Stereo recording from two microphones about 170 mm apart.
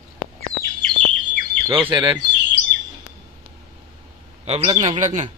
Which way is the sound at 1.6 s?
30° right (ahead or behind).